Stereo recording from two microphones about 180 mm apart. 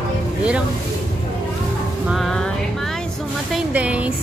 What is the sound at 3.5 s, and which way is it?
Speech, 5° right (ahead or behind).